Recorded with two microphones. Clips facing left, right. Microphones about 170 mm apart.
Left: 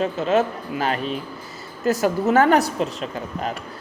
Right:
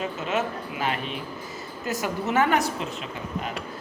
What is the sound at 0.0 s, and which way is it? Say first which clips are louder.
A woman's voice: left 7 dB; 35° left (ahead or behind).